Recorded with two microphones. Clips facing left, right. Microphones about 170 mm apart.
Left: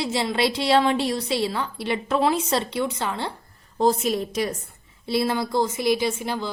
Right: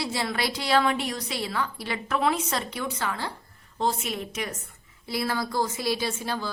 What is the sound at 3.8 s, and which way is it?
A woman's voice, 40° left (ahead or behind).